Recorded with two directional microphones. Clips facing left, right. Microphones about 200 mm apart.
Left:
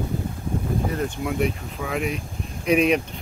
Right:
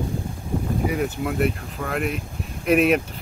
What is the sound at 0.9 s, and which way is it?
Speech, 5° right (ahead or behind).